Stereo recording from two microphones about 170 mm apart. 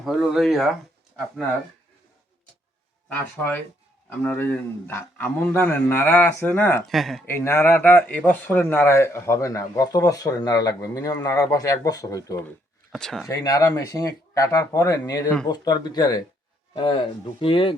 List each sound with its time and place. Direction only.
0.0 s speech: centre (ahead or behind)
3.1 s speech: 10° left (ahead or behind)
7.3 s speech: 15° left (ahead or behind)
13.2 s speech: 20° left (ahead or behind)